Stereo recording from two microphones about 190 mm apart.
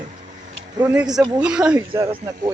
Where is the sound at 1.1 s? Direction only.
20° right (ahead or behind).